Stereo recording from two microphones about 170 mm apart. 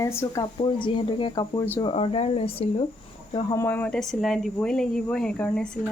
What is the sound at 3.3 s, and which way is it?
Speech, 25° left (ahead or behind).